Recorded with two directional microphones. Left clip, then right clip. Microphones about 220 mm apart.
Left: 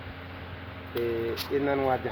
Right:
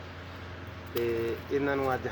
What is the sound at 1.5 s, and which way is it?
Speech, 10° left (ahead or behind).